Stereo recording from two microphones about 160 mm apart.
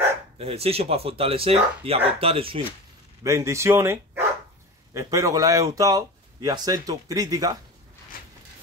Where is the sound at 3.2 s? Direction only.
20° right (ahead or behind).